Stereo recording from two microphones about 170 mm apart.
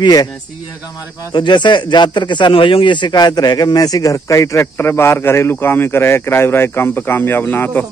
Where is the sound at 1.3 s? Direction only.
25° left (ahead or behind).